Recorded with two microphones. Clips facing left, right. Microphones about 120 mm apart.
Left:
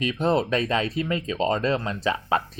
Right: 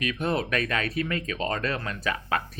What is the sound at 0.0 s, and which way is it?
Speech, 25° left (ahead or behind).